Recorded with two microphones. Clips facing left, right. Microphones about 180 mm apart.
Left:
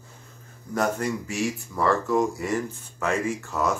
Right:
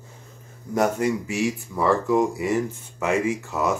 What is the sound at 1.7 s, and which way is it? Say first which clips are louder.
Speech: right 2 dB; 15° right (ahead or behind).